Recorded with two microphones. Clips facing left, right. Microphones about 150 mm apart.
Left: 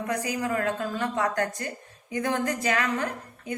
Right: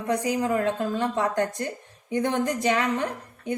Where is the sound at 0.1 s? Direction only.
25° right (ahead or behind).